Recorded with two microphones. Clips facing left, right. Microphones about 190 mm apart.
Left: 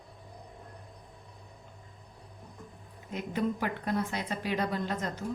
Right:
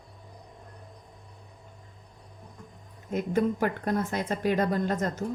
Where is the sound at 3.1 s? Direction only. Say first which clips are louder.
Right 5 dB; 45° right (ahead or behind).